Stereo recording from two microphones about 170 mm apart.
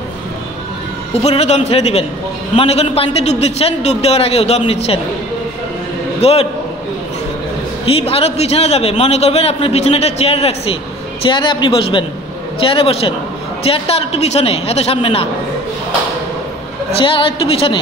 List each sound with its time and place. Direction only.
1.1 s a man's voice: 35° left (ahead or behind)
6.2 s a man's voice: 35° left (ahead or behind)
7.8 s a man's voice: 35° left (ahead or behind)
16.9 s a man's voice: 30° left (ahead or behind)